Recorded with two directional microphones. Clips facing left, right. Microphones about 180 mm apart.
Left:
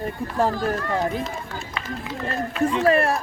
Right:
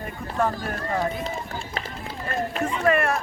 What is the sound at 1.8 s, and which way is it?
Run, 40° right (ahead or behind).